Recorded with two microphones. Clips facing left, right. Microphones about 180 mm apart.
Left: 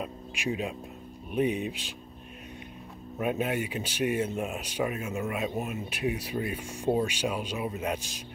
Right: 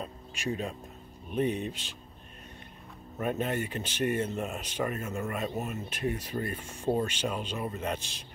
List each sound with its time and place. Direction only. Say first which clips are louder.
0.0 s speech: left 2 dB; 10° left (ahead or behind)
3.2 s speech: left 2 dB; 10° left (ahead or behind)